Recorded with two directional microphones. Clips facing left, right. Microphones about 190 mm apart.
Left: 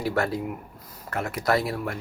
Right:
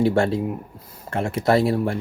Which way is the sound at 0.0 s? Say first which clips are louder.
Right 7 dB; 25° right (ahead or behind).